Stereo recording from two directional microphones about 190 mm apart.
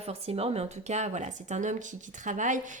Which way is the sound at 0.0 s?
30° right (ahead or behind).